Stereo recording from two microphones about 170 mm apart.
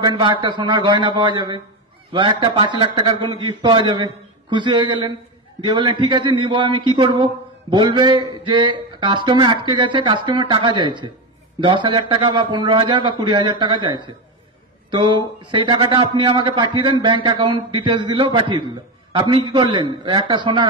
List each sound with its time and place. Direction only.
0.0 s a man's voice: 30° right (ahead or behind)